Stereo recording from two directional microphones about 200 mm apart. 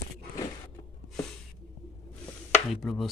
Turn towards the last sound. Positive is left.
turn(degrees=0)  # may be behind; listen again after turning